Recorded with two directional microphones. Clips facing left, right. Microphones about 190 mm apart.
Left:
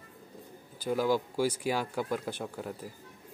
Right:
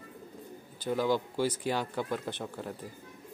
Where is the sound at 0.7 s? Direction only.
10° left (ahead or behind).